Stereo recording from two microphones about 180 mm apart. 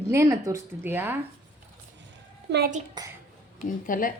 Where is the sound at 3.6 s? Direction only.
50° left (ahead or behind).